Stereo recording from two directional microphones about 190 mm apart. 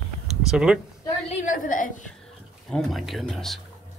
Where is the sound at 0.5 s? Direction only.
Centre (ahead or behind).